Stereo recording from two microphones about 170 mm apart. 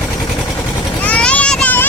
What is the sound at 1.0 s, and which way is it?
Vehicle, 5° left (ahead or behind).